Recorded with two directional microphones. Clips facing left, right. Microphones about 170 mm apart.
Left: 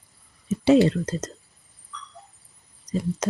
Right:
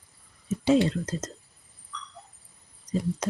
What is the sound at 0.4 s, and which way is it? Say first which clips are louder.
Speech: left 5 dB; 70° left (ahead or behind).